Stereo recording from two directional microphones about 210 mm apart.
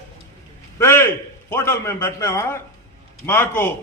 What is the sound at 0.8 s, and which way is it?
A man's voice, 10° left (ahead or behind).